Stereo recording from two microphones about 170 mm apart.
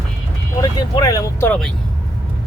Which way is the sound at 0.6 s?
20° left (ahead or behind).